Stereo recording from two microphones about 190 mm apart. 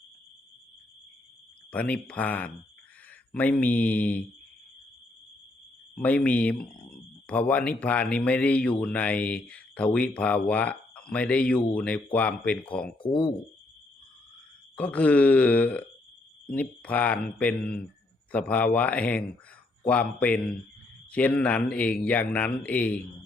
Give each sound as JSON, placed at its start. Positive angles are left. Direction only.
{"t": 1.7, "sound": "speech", "side_deg": 5}
{"t": 5.9, "sound": "speech", "side_deg": 5}
{"t": 13.0, "sound": "speech", "side_deg": 25}
{"t": 14.8, "sound": "speech", "side_deg": 5}